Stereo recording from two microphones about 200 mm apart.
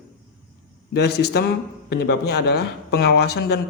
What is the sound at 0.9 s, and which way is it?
Speech, 55° left (ahead or behind).